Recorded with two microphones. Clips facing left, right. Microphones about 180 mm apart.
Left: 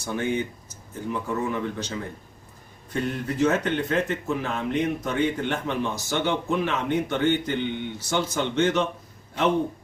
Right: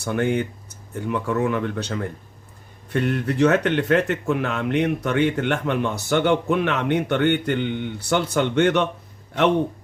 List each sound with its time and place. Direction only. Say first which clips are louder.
0.0 s speech: right 4 dB; 65° right (ahead or behind)
2.9 s speech: right 5 dB; 70° right (ahead or behind)